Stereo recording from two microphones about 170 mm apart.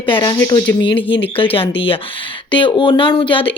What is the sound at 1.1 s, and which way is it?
Speech, 30° left (ahead or behind).